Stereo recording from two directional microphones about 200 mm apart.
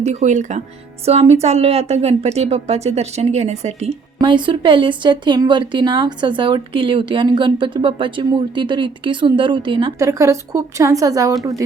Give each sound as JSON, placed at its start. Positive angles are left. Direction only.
{"t": 0.0, "sound": "a woman's voice", "side_deg": -35}